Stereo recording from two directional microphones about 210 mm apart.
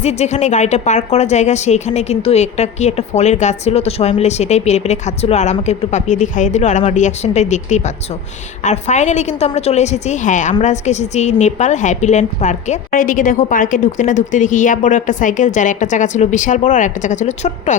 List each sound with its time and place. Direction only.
0.0 s a woman's voice: 30° left (ahead or behind)